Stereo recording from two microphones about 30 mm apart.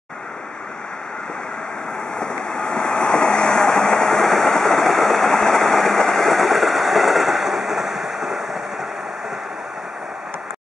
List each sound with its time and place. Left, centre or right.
2.1 s vehicle: left; by 6.2 s centre
6.2 s train: centre